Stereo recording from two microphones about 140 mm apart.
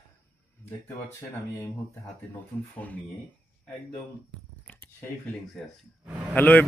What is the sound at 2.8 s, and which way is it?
Speech, 10° left (ahead or behind).